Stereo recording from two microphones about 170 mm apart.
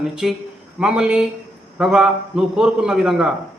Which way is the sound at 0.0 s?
5° right (ahead or behind).